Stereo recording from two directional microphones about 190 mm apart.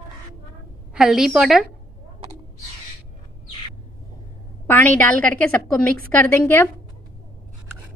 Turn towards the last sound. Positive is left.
turn(degrees=10)  # may be behind; listen again after turning